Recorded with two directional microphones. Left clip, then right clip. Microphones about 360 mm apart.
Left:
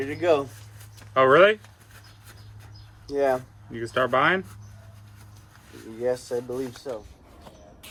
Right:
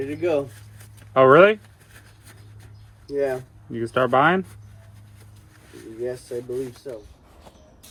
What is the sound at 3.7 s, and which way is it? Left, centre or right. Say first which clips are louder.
Speech: right 4 dB; centre.